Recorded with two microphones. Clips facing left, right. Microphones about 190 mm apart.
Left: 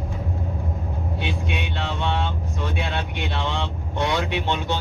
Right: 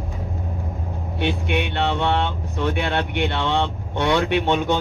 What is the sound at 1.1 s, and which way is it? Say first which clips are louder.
Speech: right 8 dB; 65° right (ahead or behind).